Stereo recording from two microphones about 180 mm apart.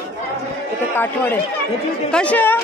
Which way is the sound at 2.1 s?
5° left (ahead or behind).